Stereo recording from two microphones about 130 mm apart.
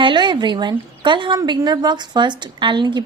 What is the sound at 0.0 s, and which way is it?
A woman's voice, 35° right (ahead or behind).